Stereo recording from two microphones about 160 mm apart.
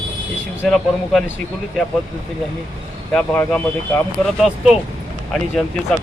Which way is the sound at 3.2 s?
5° left (ahead or behind).